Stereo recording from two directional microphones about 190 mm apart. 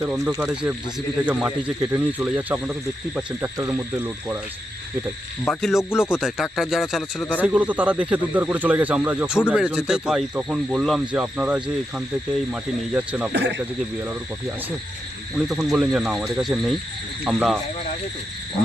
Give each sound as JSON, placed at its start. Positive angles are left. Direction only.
{"t": 0.3, "sound": "speech", "side_deg": -10}
{"t": 5.5, "sound": "speech", "side_deg": 0}
{"t": 5.9, "sound": "music", "side_deg": 15}
{"t": 6.2, "sound": "speech", "side_deg": 0}
{"t": 7.4, "sound": "speech", "side_deg": -10}
{"t": 13.3, "sound": "speech", "side_deg": -65}
{"t": 15.4, "sound": "speech", "side_deg": -5}